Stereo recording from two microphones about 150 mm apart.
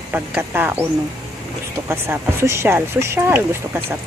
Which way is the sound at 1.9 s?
15° right (ahead or behind).